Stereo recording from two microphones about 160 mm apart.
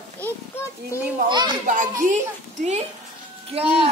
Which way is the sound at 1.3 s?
30° right (ahead or behind).